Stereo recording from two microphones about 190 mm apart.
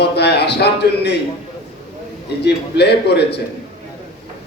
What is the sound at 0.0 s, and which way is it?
A man's voice, 60° left (ahead or behind).